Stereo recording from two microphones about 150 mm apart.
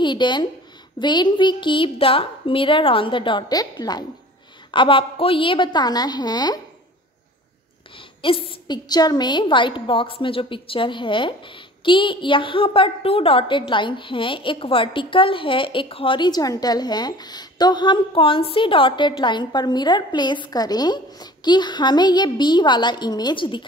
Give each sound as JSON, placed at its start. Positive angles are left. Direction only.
{"t": 0.0, "sound": "a woman's voice", "side_deg": 30}
{"t": 8.2, "sound": "a woman's voice", "side_deg": 35}